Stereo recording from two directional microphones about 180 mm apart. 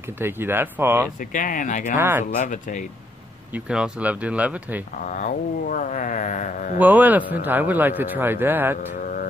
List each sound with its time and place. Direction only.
0.2 s a man's voice: 10° right (ahead or behind)
1.3 s speech: 45° left (ahead or behind)
2.0 s a man's voice: 10° right (ahead or behind)
2.3 s speech: 45° left (ahead or behind)
3.5 s a man's voice: 5° right (ahead or behind)
5.0 s speech: 45° left (ahead or behind)
6.8 s a man's voice: 10° right (ahead or behind)
9.0 s a sound: 50° left (ahead or behind)